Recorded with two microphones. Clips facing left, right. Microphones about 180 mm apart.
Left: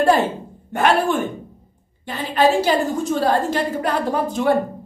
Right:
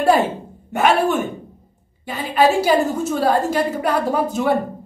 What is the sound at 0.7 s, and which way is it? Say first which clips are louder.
A woman's voice: right 1 dB; 5° right (ahead or behind).